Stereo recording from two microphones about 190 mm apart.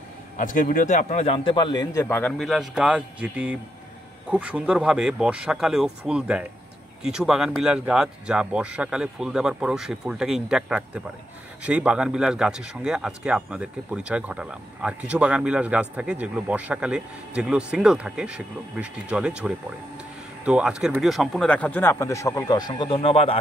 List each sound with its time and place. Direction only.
0.4 s a man's voice: 45° left (ahead or behind)